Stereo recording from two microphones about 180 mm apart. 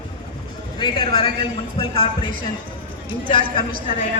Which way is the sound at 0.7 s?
25° left (ahead or behind).